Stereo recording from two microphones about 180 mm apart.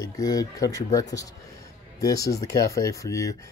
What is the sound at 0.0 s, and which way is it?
Speech, 20° left (ahead or behind).